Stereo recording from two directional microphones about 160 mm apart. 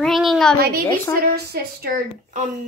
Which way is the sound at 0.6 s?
75° right (ahead or behind).